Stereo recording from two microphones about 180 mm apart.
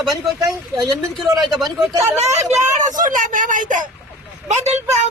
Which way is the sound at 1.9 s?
15° right (ahead or behind).